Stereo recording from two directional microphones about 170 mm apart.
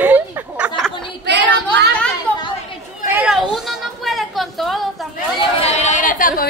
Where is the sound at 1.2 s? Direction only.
90° right.